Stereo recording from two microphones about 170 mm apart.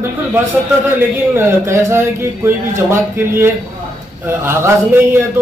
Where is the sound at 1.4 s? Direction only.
15° right (ahead or behind).